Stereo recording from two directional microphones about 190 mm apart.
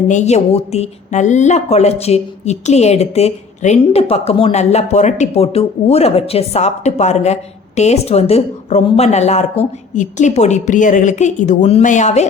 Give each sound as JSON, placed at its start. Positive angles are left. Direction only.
{"t": 0.1, "sound": "a woman's voice", "side_deg": 35}